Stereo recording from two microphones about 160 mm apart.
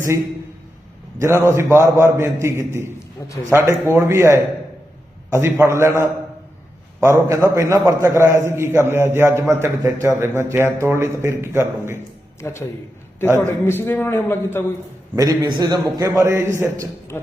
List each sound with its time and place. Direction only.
1.2 s a man's voice: 15° right (ahead or behind)
12.4 s a man's voice: 15° left (ahead or behind)
15.1 s a man's voice: 20° right (ahead or behind)